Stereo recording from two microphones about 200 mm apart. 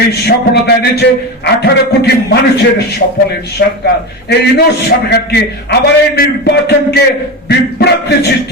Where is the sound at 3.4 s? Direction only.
55° left (ahead or behind).